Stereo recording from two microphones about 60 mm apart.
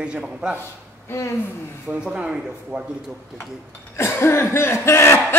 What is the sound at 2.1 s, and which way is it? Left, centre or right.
Speech, centre.